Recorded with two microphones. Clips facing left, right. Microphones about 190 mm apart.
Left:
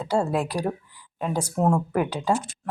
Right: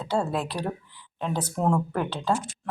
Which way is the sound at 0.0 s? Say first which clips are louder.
Left 3 dB; 10° left (ahead or behind).